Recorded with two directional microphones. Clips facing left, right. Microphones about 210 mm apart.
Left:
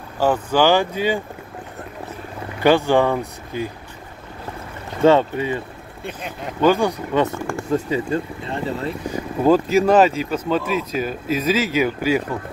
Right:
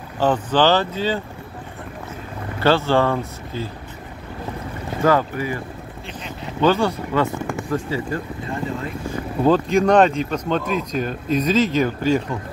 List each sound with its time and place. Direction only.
0.2 s speech: 10° left (ahead or behind)
2.6 s speech: 15° left (ahead or behind)
5.0 s speech: 25° left (ahead or behind)
6.0 s speech: 55° left (ahead or behind)
6.6 s speech: 15° left (ahead or behind)
7.2 s speech: centre (ahead or behind)
7.7 s speech: 25° left (ahead or behind)
9.1 s speech: 10° left (ahead or behind)